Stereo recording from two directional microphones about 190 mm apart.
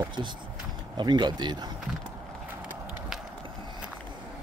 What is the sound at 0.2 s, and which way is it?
Speech, 25° right (ahead or behind).